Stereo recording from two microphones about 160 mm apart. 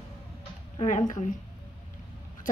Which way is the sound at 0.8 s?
50° left (ahead or behind).